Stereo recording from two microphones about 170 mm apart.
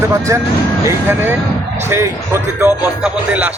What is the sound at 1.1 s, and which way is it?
A man's voice, 15° right (ahead or behind).